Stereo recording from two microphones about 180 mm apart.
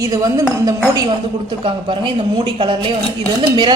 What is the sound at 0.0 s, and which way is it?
A woman's voice, 20° right (ahead or behind).